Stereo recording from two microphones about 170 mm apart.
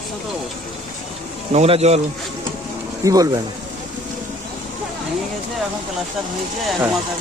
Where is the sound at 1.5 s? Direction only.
35° right (ahead or behind).